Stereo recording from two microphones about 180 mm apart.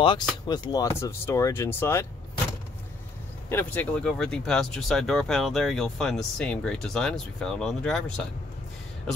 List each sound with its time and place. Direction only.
0.0 s speech: 25° left (ahead or behind)
3.4 s speech: 10° left (ahead or behind)